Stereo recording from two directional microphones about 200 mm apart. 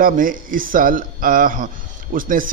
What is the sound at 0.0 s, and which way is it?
Speech, 45° right (ahead or behind).